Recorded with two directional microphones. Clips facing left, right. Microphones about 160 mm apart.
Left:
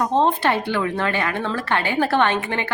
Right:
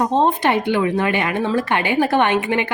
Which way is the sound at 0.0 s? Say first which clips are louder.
Right 2 dB; 15° right (ahead or behind).